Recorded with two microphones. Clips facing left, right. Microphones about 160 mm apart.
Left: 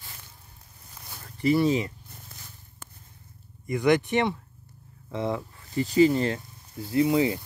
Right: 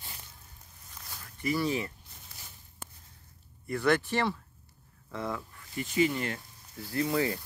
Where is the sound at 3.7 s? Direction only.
15° left (ahead or behind).